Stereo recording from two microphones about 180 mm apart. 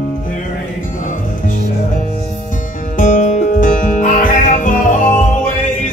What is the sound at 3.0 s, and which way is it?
Music, 45° left (ahead or behind).